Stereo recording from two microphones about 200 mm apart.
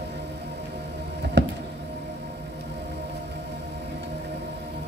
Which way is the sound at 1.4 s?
60° right (ahead or behind).